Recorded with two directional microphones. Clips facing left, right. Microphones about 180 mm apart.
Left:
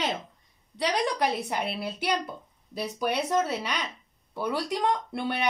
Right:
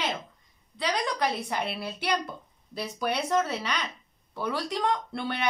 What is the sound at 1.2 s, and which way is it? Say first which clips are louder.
A woman's voice: left 1 dB; 10° left (ahead or behind).